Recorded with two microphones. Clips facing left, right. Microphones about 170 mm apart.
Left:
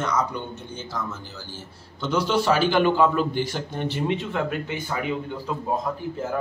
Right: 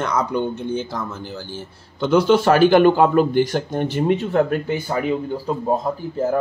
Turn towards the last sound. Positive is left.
turn(degrees=-35)  # may be behind; listen again after turning